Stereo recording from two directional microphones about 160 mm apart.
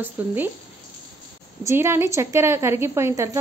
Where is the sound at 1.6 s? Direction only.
15° right (ahead or behind).